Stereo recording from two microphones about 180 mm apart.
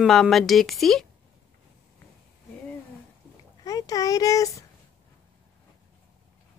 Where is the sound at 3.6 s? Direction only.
20° left (ahead or behind).